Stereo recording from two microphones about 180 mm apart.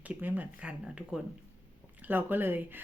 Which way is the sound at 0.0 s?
10° right (ahead or behind).